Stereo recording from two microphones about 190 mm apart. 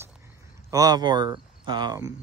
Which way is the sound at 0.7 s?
20° right (ahead or behind).